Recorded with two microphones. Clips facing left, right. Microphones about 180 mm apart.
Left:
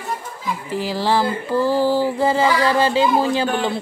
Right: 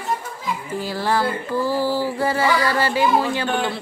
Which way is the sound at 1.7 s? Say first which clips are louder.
Left 4 dB; 15° left (ahead or behind).